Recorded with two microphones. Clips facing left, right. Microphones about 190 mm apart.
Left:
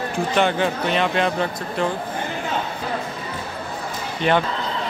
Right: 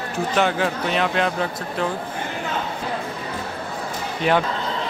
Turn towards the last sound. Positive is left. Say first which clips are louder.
# even
turn(degrees=-5)  # may be behind; listen again after turning